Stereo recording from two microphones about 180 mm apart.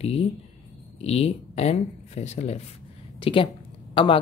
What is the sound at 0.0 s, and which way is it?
Speech, 35° left (ahead or behind).